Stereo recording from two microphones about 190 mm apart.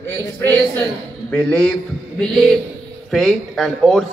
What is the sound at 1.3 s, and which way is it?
A man's voice, 5° left (ahead or behind).